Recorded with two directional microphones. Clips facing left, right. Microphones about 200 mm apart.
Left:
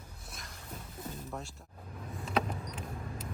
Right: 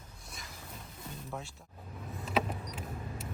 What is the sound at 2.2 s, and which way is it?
Vehicle, 5° right (ahead or behind).